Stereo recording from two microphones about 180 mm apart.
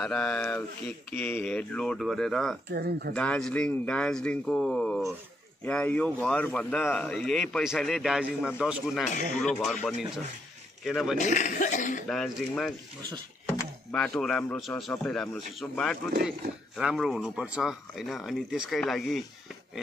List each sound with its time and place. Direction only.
0.0 s speech: 5° left (ahead or behind)
2.7 s speech: 60° right (ahead or behind)
3.2 s speech: 5° left (ahead or behind)
10.8 s speech: centre (ahead or behind)
11.1 s speech: 45° left (ahead or behind)
12.1 s speech: 5° left (ahead or behind)